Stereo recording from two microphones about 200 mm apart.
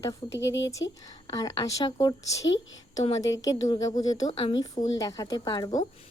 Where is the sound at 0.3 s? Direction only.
65° left (ahead or behind).